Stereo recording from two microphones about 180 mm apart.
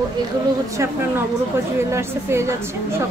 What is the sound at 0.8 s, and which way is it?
A woman's voice, 15° right (ahead or behind).